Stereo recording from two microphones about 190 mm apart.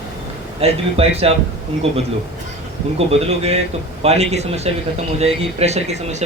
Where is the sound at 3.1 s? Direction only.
30° right (ahead or behind).